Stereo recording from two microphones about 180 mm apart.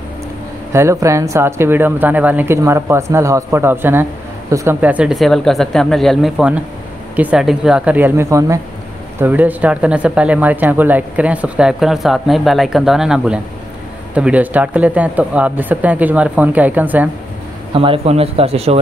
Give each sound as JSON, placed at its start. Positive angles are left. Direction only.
{"t": 0.7, "sound": "speech", "side_deg": -15}
{"t": 17.7, "sound": "speech", "side_deg": -30}